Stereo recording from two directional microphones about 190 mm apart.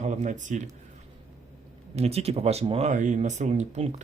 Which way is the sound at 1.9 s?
35° right (ahead or behind).